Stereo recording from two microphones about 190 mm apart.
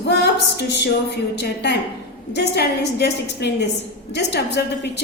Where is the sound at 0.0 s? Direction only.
60° left (ahead or behind).